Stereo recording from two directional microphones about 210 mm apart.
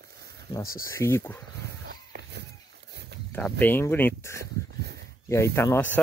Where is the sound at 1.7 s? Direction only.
50° right (ahead or behind).